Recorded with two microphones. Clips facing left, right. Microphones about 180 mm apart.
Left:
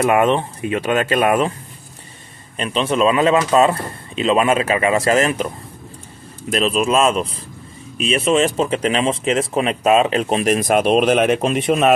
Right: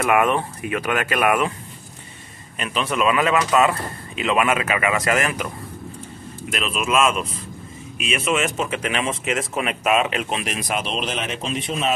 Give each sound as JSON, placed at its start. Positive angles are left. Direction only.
{"t": 0.0, "sound": "speech", "side_deg": 25}
{"t": 2.5, "sound": "speech", "side_deg": 30}
{"t": 6.5, "sound": "speech", "side_deg": 35}